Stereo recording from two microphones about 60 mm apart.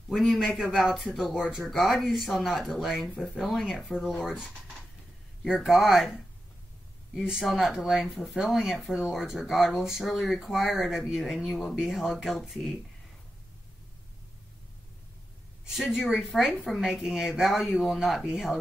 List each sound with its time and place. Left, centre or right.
0.4 s speech: centre
1.6 s speech: centre
3.1 s speech: left
3.3 s speech: centre
5.4 s speech: centre
7.2 s speech: centre
15.7 s speech: centre